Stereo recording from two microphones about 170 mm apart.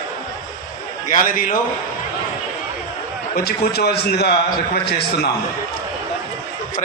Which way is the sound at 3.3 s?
70° left (ahead or behind).